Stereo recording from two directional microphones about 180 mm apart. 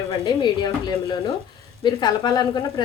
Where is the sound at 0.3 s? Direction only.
25° left (ahead or behind).